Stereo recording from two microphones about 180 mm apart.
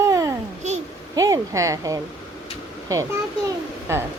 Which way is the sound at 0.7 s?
40° right (ahead or behind).